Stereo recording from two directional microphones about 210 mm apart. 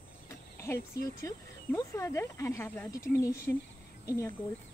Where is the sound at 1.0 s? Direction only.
15° left (ahead or behind).